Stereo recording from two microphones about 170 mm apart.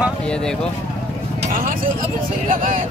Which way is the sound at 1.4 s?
55° right (ahead or behind).